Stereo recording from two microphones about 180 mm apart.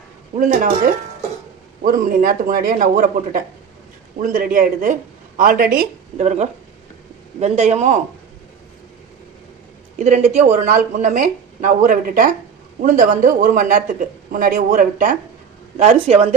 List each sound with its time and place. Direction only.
0.3 s speech: 45° right (ahead or behind)
6.1 s a man's voice: 40° right (ahead or behind)
10.0 s speech: 40° right (ahead or behind)
15.8 s a man's voice: 35° right (ahead or behind)